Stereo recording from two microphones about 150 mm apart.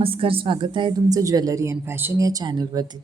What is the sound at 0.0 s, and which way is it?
A woman's voice, 40° right (ahead or behind).